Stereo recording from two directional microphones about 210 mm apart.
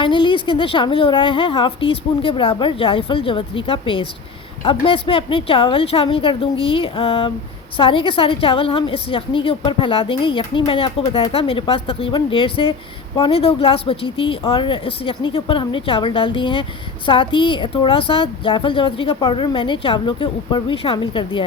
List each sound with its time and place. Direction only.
0.0 s a woman's voice: 25° left (ahead or behind)